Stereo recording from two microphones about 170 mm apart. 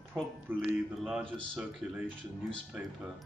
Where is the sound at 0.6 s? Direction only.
Centre (ahead or behind).